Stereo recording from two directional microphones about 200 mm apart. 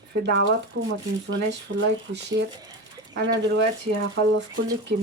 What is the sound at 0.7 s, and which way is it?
Speech, 70° right (ahead or behind).